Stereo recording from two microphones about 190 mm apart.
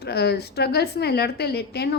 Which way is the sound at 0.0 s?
60° left (ahead or behind).